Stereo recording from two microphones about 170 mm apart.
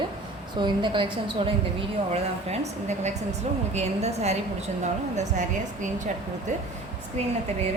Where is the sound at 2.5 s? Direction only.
40° right (ahead or behind).